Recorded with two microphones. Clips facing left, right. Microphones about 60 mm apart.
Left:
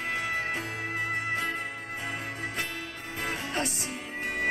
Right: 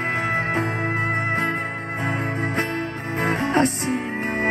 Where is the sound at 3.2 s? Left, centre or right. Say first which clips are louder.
Right 12 dB; right.